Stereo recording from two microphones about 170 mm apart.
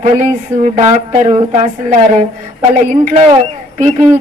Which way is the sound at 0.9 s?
45° right (ahead or behind).